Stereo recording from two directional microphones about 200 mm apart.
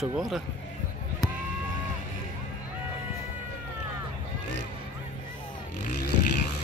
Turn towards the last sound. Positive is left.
turn(degrees=40)  # may be behind; listen again after turning